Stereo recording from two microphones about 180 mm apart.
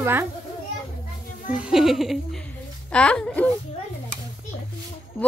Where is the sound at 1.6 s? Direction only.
5° right (ahead or behind).